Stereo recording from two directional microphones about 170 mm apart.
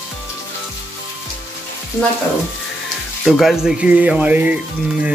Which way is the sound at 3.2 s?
Centre (ahead or behind).